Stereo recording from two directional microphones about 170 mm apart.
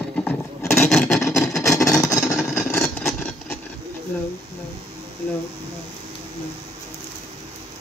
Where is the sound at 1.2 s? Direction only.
15° left (ahead or behind).